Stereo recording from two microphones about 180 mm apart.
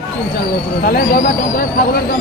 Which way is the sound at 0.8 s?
60° left (ahead or behind).